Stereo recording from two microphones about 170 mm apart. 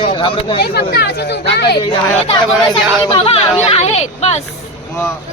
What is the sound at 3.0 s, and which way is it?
A woman's voice, 35° left (ahead or behind).